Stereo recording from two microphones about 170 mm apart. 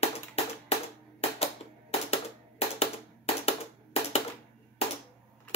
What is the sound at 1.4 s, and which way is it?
Typewriter, 35° left (ahead or behind).